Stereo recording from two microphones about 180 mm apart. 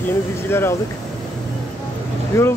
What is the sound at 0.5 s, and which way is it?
Speech, 15° left (ahead or behind).